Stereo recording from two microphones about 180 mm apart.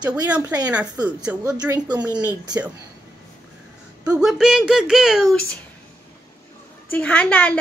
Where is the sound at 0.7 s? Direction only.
5° right (ahead or behind).